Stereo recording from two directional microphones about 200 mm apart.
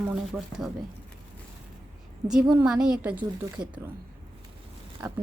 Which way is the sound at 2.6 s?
5° right (ahead or behind).